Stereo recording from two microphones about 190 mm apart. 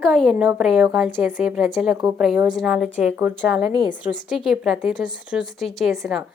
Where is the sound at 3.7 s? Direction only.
20° right (ahead or behind).